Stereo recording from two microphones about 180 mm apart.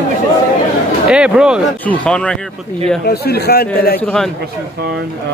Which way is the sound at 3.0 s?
60° left (ahead or behind).